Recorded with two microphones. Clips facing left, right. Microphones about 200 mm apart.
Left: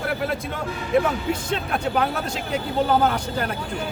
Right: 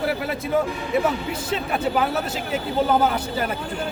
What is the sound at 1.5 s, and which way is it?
A man's voice, 5° right (ahead or behind).